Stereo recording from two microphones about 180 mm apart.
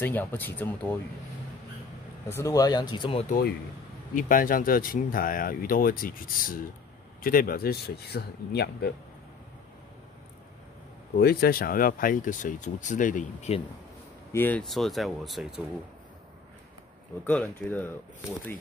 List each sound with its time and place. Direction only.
0.0 s speech: 10° left (ahead or behind)
2.3 s speech: 20° left (ahead or behind)
3.3 s speech: 55° left (ahead or behind)
11.1 s speech: 60° left (ahead or behind); by 13.6 s 40° left (ahead or behind)
14.3 s speech: 10° left (ahead or behind)
17.3 s speech: 10° left (ahead or behind)